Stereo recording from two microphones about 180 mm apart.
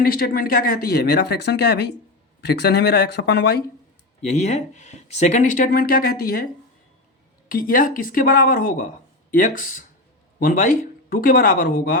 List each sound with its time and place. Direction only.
0.0 s speech: 55° left (ahead or behind)
4.2 s speech: 40° left (ahead or behind)